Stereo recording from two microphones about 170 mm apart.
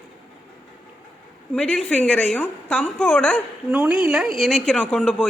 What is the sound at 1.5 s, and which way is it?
A man's voice, 5° left (ahead or behind).